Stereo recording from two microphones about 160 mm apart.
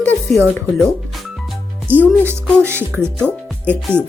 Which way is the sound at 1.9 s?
10° right (ahead or behind).